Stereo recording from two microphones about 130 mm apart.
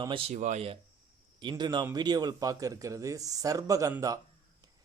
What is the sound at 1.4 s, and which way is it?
A man's voice, 35° right (ahead or behind).